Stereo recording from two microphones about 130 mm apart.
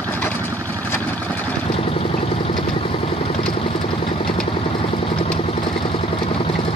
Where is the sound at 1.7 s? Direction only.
50° left (ahead or behind).